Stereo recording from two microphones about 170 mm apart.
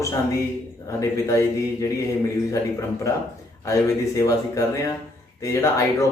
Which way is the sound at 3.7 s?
20° left (ahead or behind).